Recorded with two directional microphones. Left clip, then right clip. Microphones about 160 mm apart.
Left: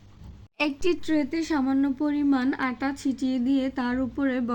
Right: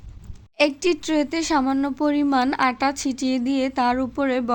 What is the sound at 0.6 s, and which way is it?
Speech, 35° right (ahead or behind).